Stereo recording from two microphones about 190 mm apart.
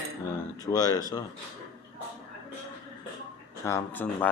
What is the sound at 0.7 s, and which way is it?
Speech, 20° left (ahead or behind).